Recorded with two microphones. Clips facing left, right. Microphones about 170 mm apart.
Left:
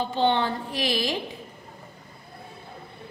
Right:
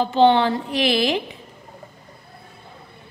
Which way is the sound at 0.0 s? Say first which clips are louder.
Right 7 dB; 90° right.